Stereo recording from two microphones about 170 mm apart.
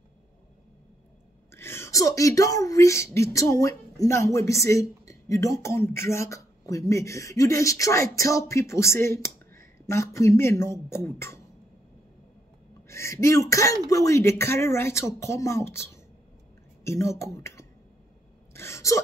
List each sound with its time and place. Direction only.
1.5 s speech: 15° left (ahead or behind)
12.8 s speech: 15° left (ahead or behind)